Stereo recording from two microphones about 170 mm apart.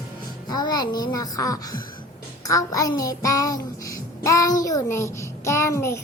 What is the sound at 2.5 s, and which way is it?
A child's voice, 20° left (ahead or behind).